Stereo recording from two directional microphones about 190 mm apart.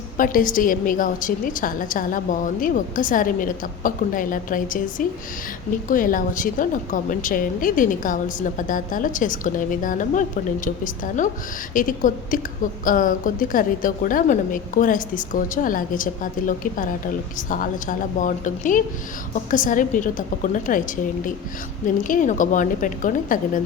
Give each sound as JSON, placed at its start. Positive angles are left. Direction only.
{"t": 0.2, "sound": "a woman's voice", "side_deg": 45}